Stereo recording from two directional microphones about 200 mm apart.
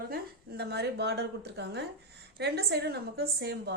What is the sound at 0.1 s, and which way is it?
A woman's voice, 55° right (ahead or behind).